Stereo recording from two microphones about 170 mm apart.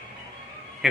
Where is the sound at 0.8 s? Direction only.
5° right (ahead or behind).